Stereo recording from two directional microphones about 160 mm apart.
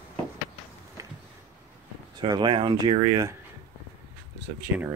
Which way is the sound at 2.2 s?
30° right (ahead or behind).